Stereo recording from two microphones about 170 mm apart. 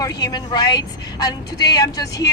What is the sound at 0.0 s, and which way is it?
A woman's voice, 25° left (ahead or behind).